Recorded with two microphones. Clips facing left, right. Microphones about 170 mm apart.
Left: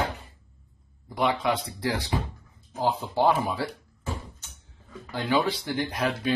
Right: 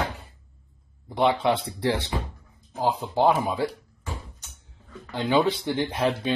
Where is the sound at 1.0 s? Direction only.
25° right (ahead or behind).